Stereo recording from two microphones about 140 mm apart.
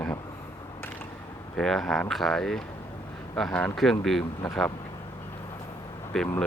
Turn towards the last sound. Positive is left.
turn(degrees=5)  # may be behind; listen again after turning